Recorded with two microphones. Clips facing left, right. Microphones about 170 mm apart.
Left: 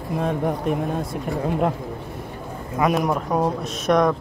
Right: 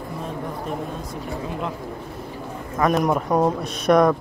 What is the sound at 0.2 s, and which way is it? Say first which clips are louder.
Speech: left 9 dB; 65° left (ahead or behind).